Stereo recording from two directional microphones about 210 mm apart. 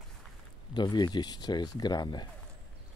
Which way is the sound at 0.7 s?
20° left (ahead or behind).